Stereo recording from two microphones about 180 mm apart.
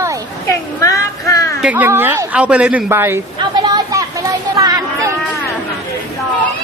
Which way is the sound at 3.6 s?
20° right (ahead or behind).